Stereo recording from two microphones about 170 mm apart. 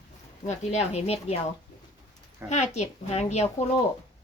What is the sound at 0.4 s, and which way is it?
Speech, 40° left (ahead or behind).